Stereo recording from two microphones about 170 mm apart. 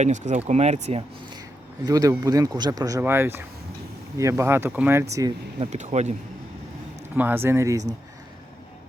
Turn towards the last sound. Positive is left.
turn(degrees=-15)  # may be behind; listen again after turning